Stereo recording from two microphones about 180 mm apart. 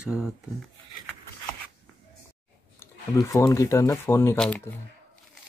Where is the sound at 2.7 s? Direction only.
15° left (ahead or behind).